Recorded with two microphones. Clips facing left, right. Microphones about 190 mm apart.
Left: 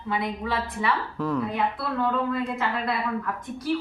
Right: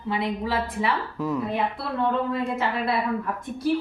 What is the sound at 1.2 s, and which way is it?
Speech, 10° right (ahead or behind).